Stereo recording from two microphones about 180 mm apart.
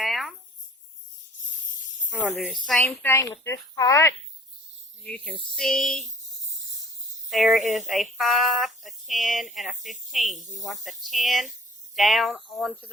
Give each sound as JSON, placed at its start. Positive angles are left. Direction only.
{"t": 0.0, "sound": "a sound", "side_deg": 0}
{"t": 2.0, "sound": "a woman's voice", "side_deg": 0}
{"t": 2.8, "sound": "speech", "side_deg": 15}
{"t": 5.0, "sound": "speech", "side_deg": 5}
{"t": 7.3, "sound": "speech", "side_deg": 0}